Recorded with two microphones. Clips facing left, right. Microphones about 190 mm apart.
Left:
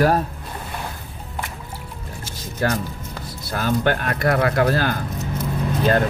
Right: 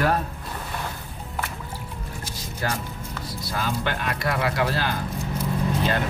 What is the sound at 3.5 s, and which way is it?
Speech, 50° left (ahead or behind).